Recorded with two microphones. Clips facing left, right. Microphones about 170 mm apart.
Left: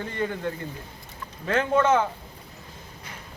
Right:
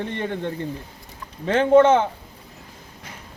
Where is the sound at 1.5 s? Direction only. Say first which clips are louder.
Right 7 dB; 25° right (ahead or behind).